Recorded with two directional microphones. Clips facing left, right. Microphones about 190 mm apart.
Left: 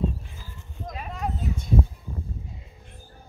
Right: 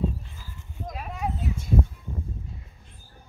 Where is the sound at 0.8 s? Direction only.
5° right (ahead or behind).